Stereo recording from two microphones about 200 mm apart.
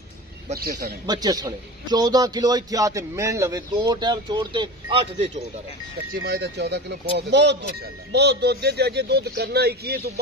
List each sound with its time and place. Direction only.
0.6 s speech: 50° right (ahead or behind)
1.0 s a man's voice: 20° right (ahead or behind)
6.1 s speech: 50° right (ahead or behind)